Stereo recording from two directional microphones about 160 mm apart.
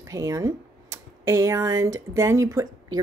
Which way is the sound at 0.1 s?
20° right (ahead or behind).